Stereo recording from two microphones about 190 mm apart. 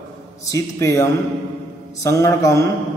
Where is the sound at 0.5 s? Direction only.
15° left (ahead or behind).